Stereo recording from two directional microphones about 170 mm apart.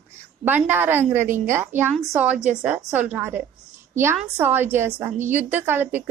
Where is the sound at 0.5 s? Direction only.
10° right (ahead or behind).